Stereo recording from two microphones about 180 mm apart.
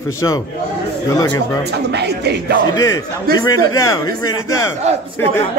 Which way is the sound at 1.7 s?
65° right (ahead or behind).